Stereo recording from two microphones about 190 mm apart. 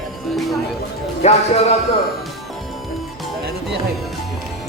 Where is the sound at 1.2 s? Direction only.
35° left (ahead or behind).